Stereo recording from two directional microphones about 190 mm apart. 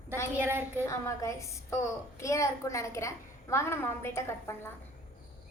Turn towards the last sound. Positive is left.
turn(degrees=15)  # may be behind; listen again after turning